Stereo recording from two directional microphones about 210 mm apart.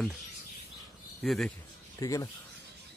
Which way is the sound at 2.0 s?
15° left (ahead or behind).